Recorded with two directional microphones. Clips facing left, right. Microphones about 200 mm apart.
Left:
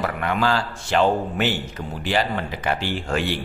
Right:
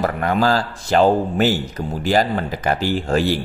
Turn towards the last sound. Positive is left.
turn(degrees=-40)  # may be behind; listen again after turning